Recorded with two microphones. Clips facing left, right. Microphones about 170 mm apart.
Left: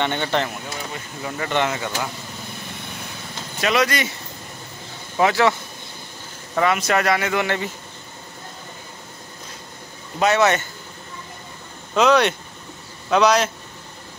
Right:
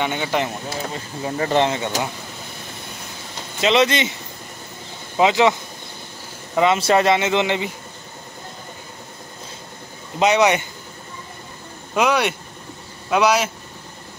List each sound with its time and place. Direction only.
0.0 s a man's voice: 10° right (ahead or behind)
0.7 s speech: 30° right (ahead or behind)
3.6 s speech: 25° right (ahead or behind)
5.1 s a man's voice: 20° right (ahead or behind)
10.1 s a man's voice: 15° right (ahead or behind)
11.9 s a man's voice: 10° right (ahead or behind)